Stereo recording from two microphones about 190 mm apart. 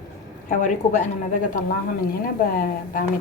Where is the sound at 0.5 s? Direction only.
40° left (ahead or behind).